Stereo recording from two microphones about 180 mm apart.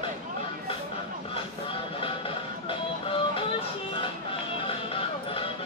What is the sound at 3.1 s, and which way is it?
Music, 30° left (ahead or behind).